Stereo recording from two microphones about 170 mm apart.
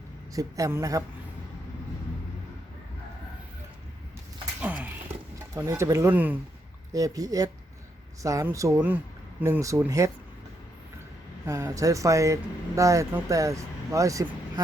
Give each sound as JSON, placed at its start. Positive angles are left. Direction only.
{"t": 0.3, "sound": "speech", "side_deg": -20}
{"t": 4.6, "sound": "a sound", "side_deg": -10}
{"t": 5.5, "sound": "speech", "side_deg": -15}
{"t": 11.4, "sound": "speech", "side_deg": -20}